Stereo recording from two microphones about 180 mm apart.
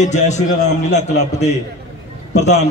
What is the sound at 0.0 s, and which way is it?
A man's voice, 40° left (ahead or behind).